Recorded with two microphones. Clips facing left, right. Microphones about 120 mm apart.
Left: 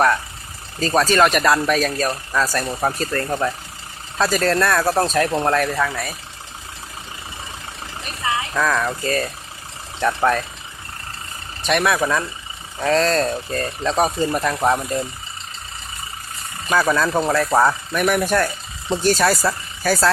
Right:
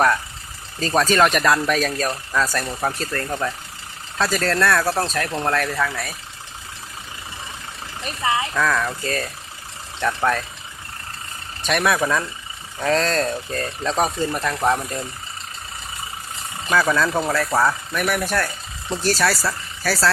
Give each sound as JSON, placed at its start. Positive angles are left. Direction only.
{"t": 0.8, "sound": "speech", "side_deg": 0}
{"t": 8.5, "sound": "speech", "side_deg": 10}
{"t": 11.6, "sound": "speech", "side_deg": 0}
{"t": 16.6, "sound": "speech", "side_deg": 15}